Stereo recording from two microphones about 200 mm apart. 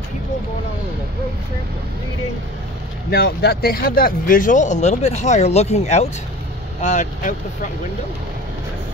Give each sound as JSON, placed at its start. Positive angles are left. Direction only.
{"t": 3.1, "sound": "speech", "side_deg": 50}